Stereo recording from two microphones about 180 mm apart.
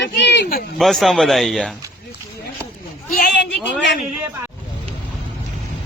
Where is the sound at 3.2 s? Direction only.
65° left (ahead or behind).